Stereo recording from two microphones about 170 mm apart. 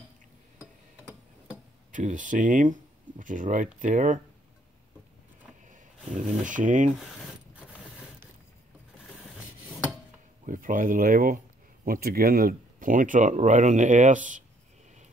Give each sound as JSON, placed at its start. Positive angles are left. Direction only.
{"t": 1.9, "sound": "speech", "side_deg": -50}
{"t": 5.7, "sound": "speech", "side_deg": -50}
{"t": 7.0, "sound": "mechanisms", "side_deg": 0}
{"t": 10.4, "sound": "speech", "side_deg": -50}